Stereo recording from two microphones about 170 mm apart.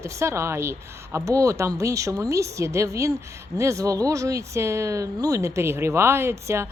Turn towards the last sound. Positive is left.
turn(degrees=-15)  # may be behind; listen again after turning